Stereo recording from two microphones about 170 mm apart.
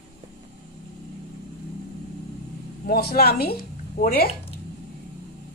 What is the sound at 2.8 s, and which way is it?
A woman's voice, 65° left (ahead or behind).